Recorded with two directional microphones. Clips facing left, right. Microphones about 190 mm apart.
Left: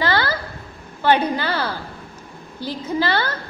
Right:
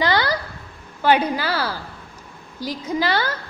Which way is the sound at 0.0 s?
15° right (ahead or behind).